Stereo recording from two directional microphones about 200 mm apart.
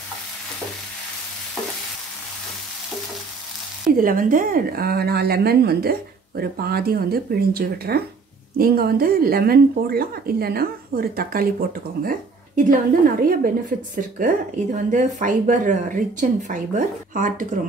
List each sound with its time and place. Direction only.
4.0 s a woman's voice: 45° right (ahead or behind)